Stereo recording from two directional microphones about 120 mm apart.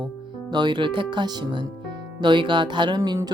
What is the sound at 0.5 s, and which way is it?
Speech, 40° right (ahead or behind).